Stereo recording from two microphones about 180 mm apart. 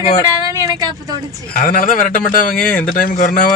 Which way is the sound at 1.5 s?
50° left (ahead or behind).